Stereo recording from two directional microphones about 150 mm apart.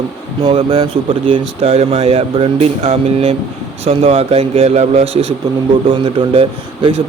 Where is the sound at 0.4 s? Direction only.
35° right (ahead or behind).